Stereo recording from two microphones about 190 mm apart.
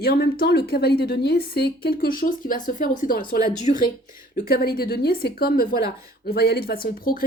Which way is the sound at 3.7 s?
35° left (ahead or behind).